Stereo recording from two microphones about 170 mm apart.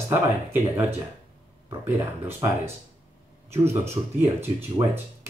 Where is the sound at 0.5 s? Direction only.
15° right (ahead or behind).